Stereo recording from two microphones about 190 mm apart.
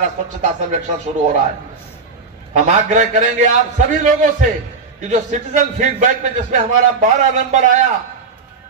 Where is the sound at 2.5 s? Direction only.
40° right (ahead or behind).